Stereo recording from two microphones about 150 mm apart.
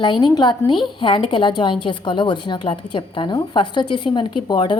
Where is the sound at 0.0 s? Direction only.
30° left (ahead or behind).